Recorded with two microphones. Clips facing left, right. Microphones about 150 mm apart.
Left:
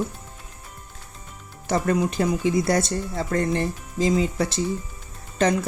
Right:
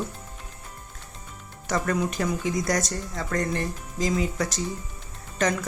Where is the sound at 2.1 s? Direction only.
30° left (ahead or behind).